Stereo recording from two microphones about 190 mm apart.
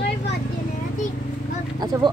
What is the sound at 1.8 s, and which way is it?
Speech, 20° right (ahead or behind).